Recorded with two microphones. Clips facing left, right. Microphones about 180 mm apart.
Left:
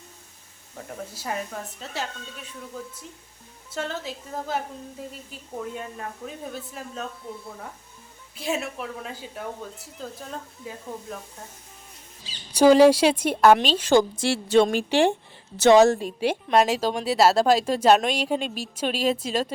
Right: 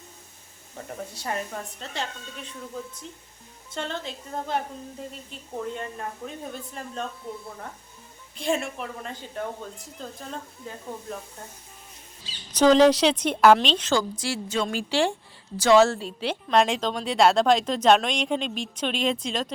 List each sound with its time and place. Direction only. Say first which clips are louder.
0.8 s a woman's voice: even; centre (ahead or behind)
8.4 s a woman's voice: right 2 dB; 5° left (ahead or behind)
12.5 s a woman's voice: left 2 dB; 10° left (ahead or behind)
14.4 s a woman's voice: left 10 dB; 65° left (ahead or behind)
14.8 s a woman's voice: left 4 dB; 20° left (ahead or behind)